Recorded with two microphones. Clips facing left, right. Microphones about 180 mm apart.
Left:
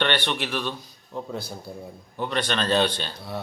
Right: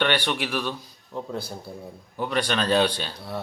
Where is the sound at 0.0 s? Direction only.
5° right (ahead or behind).